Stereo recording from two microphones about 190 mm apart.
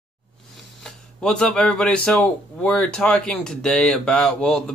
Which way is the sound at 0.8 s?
5° left (ahead or behind).